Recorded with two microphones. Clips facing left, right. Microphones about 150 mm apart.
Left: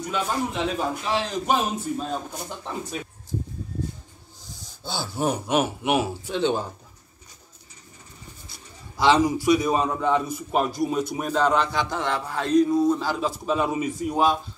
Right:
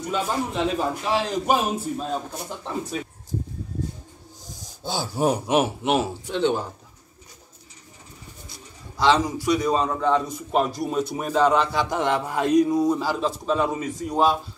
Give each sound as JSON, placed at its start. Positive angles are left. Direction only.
{"t": 0.7, "sound": "a man's voice", "side_deg": -5}
{"t": 4.9, "sound": "a man's voice", "side_deg": -10}
{"t": 5.3, "sound": "a man's voice", "side_deg": 0}
{"t": 6.3, "sound": "a man's voice", "side_deg": 15}
{"t": 8.9, "sound": "a man's voice", "side_deg": 10}
{"t": 11.9, "sound": "a man's voice", "side_deg": -20}
{"t": 13.5, "sound": "a man's voice", "side_deg": 10}